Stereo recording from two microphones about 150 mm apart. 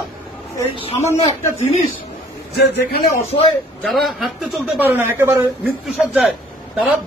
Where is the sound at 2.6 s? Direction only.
90° left.